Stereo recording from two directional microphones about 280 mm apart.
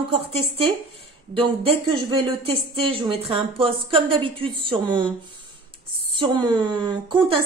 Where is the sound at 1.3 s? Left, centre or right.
Centre.